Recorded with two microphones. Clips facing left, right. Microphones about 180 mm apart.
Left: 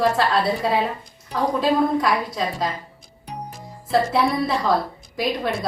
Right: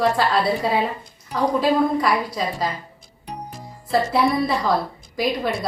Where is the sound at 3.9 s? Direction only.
Centre (ahead or behind).